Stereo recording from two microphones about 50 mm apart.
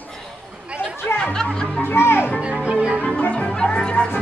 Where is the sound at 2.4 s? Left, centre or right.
Right.